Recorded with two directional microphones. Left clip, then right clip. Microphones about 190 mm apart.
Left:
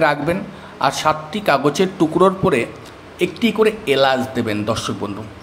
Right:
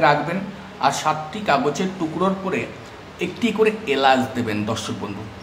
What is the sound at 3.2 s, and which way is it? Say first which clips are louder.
A man's voice: left 3 dB; 20° left (ahead or behind).